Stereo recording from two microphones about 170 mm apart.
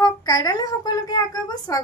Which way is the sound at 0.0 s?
20° left (ahead or behind).